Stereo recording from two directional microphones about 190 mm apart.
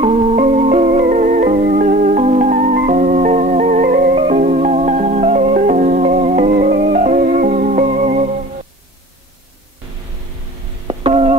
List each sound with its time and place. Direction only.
0.0 s music: 30° right (ahead or behind)
10.9 s busy signal: 30° right (ahead or behind)